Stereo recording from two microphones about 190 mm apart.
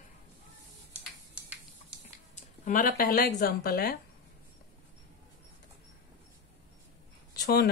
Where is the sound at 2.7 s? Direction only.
50° left (ahead or behind).